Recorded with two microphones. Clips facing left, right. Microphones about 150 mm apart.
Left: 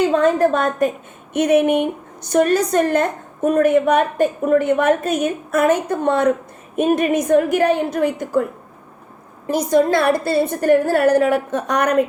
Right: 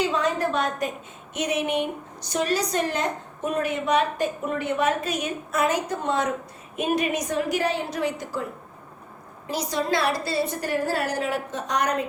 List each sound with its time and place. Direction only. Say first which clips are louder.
0.0 s a woman's voice: left 9 dB; 50° left (ahead or behind)
9.5 s a woman's voice: left 10 dB; 50° left (ahead or behind)